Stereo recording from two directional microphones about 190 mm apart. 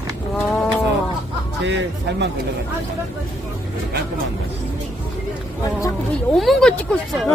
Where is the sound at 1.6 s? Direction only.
70° right (ahead or behind).